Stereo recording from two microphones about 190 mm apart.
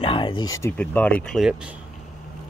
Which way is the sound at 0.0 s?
25° left (ahead or behind).